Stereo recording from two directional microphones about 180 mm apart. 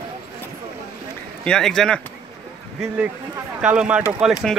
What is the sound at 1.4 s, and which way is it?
Speech, 5° left (ahead or behind).